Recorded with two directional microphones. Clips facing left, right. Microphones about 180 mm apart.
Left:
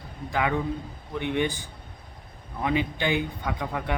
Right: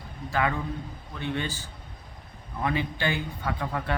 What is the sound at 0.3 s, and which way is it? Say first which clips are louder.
Speech: left 2 dB; 15° left (ahead or behind).